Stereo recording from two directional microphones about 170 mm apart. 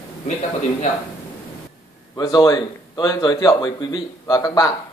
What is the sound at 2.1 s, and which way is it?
Speech, 25° left (ahead or behind).